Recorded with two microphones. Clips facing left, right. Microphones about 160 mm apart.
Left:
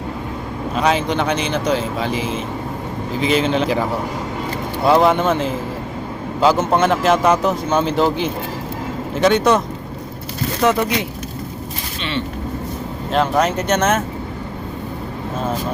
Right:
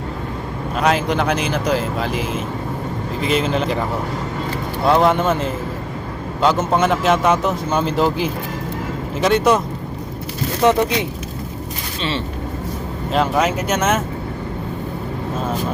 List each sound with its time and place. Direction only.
0.8 s a man's voice: centre (ahead or behind)
4.9 s a man's voice: centre (ahead or behind)
10.6 s speech: 20° right (ahead or behind)
13.1 s a man's voice: 5° right (ahead or behind)